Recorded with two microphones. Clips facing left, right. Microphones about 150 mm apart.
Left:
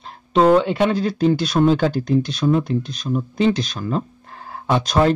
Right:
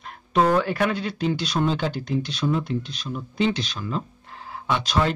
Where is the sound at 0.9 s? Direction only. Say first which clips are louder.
Left 8 dB; 40° left (ahead or behind).